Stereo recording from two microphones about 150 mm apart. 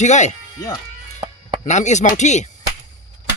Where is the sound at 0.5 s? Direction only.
25° left (ahead or behind).